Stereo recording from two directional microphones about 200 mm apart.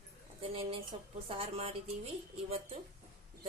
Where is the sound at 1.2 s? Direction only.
30° right (ahead or behind).